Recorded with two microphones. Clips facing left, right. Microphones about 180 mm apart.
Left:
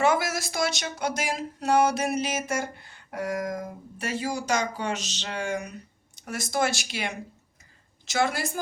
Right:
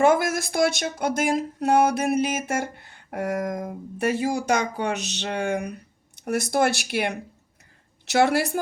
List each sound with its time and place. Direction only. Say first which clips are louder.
0.0 s speech: right 5 dB; 50° right (ahead or behind)